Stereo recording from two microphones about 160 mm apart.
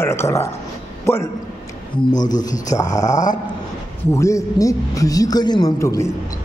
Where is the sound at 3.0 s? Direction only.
50° left (ahead or behind).